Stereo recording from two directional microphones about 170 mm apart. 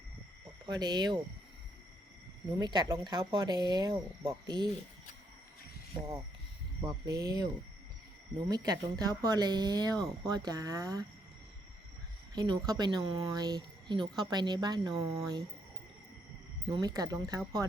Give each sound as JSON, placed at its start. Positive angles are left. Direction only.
{"t": 0.7, "sound": "speech", "side_deg": -25}
{"t": 2.6, "sound": "speech", "side_deg": -25}
{"t": 5.9, "sound": "speech", "side_deg": -20}
{"t": 8.4, "sound": "speech", "side_deg": -25}
{"t": 12.3, "sound": "speech", "side_deg": -25}
{"t": 16.6, "sound": "speech", "side_deg": -25}